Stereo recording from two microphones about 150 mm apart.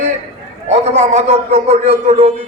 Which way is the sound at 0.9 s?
45° right (ahead or behind).